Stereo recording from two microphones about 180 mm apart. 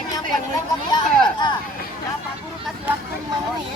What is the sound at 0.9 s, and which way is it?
Speech, 25° left (ahead or behind).